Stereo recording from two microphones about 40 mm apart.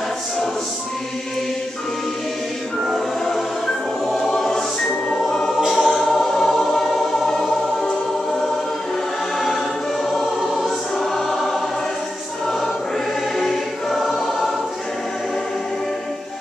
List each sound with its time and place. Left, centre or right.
4.3 s choir: centre
5.7 s music: centre
10.1 s choir: centre
13.4 s choir: centre